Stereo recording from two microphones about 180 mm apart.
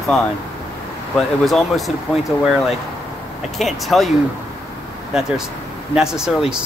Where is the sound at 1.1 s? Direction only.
Centre (ahead or behind).